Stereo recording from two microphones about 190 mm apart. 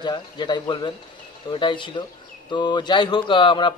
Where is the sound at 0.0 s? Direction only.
25° left (ahead or behind).